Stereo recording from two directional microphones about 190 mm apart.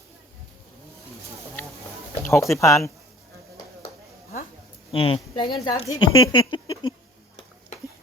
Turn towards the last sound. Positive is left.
turn(degrees=25)  # may be behind; listen again after turning